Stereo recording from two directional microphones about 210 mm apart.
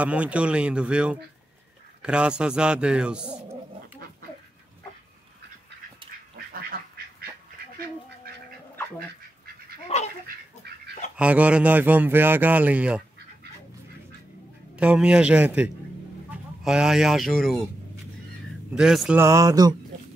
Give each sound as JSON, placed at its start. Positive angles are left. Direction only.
{"t": 0.0, "sound": "a man's voice", "side_deg": -5}
{"t": 6.3, "sound": "duck", "side_deg": -45}
{"t": 8.3, "sound": "cat", "side_deg": -45}
{"t": 9.8, "sound": "duck", "side_deg": 30}
{"t": 11.1, "sound": "speech", "side_deg": -5}
{"t": 14.8, "sound": "a man's voice", "side_deg": -5}
{"t": 18.8, "sound": "speech", "side_deg": -5}